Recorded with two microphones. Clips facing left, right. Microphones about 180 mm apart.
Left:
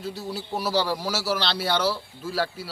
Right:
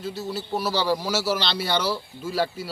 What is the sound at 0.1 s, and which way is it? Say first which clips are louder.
A man's voice: right 3 dB; 10° left (ahead or behind).